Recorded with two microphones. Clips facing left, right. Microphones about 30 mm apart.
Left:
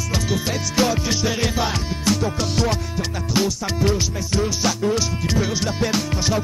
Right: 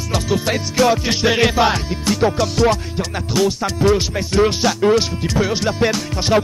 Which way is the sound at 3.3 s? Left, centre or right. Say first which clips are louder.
Right 4 dB; centre.